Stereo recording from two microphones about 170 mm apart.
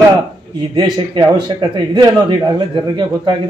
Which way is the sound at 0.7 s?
25° right (ahead or behind).